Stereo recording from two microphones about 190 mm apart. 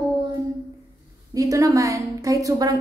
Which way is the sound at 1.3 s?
15° right (ahead or behind).